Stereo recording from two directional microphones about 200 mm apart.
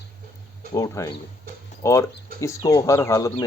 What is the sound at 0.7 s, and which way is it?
Speech, 15° left (ahead or behind).